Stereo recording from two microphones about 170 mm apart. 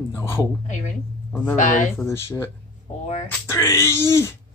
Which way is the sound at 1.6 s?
50° left (ahead or behind).